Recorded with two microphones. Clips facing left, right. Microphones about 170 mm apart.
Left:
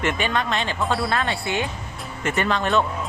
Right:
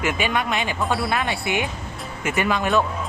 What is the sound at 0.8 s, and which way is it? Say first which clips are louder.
Speech: even; centre (ahead or behind).